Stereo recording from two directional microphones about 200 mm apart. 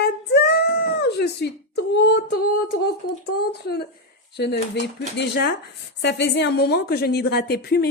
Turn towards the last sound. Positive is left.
turn(degrees=50)  # may be behind; listen again after turning